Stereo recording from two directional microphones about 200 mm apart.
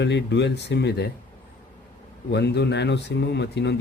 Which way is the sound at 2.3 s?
60° left (ahead or behind).